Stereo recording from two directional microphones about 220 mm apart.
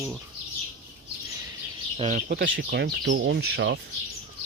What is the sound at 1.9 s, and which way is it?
Speech, 30° right (ahead or behind).